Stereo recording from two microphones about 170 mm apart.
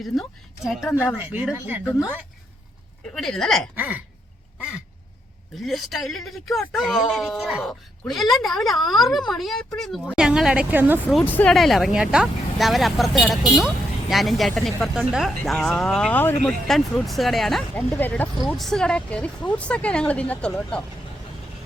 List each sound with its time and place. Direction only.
0.0 s speech: centre (ahead or behind)
3.2 s speech: centre (ahead or behind)
3.8 s speech: 10° right (ahead or behind)
5.6 s a woman's voice: centre (ahead or behind)
11.1 s speech: 10° left (ahead or behind)